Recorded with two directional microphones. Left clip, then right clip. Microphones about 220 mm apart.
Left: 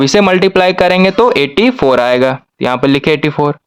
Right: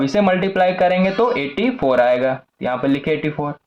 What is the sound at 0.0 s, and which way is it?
A man's voice, 45° left (ahead or behind).